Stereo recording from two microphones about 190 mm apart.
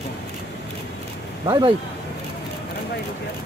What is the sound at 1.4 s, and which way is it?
Speech, 25° right (ahead or behind).